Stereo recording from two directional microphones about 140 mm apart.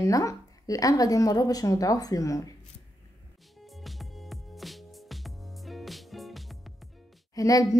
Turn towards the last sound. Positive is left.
turn(degrees=25)  # may be behind; listen again after turning